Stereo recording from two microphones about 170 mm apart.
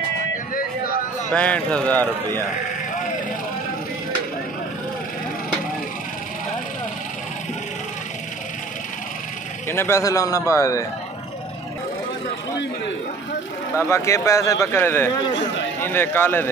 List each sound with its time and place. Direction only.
1.3 s a man's voice: 5° left (ahead or behind)
9.7 s a man's voice: 15° left (ahead or behind)
13.7 s a man's voice: 15° left (ahead or behind)
15.3 s a man's voice: 90° left
15.8 s a man's voice: 10° left (ahead or behind)